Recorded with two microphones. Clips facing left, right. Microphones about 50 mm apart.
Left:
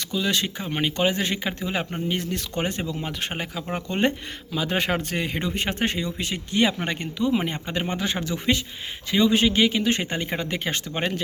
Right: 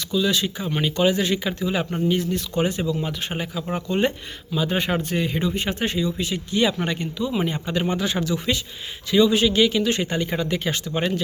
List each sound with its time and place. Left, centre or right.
0.1 s speech: left
2.0 s speech: left
4.5 s a man's voice: left